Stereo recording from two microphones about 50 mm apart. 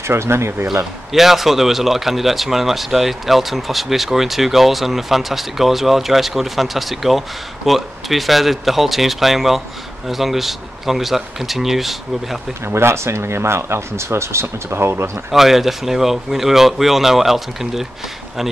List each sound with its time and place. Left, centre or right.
0.0 s speech: right
1.1 s speech: centre
12.6 s speech: right
15.3 s speech: centre